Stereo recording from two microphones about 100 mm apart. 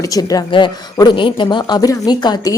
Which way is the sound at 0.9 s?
50° left (ahead or behind).